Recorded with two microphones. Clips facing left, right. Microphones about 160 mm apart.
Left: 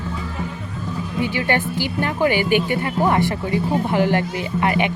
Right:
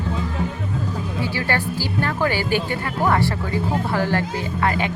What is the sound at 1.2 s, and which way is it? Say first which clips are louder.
Speech: left 4 dB; 20° left (ahead or behind).